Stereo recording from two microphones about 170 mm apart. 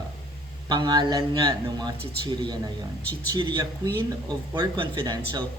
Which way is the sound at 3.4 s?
25° right (ahead or behind).